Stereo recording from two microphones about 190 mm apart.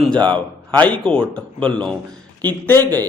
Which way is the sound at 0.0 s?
5° left (ahead or behind).